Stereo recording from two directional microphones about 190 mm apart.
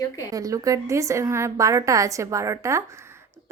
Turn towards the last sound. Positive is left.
turn(degrees=-15)  # may be behind; listen again after turning